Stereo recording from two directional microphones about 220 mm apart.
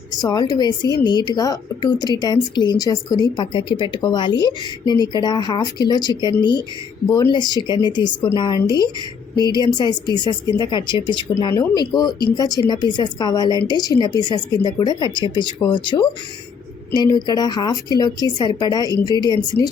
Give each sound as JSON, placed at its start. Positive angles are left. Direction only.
{"t": 0.1, "sound": "a woman's voice", "side_deg": 15}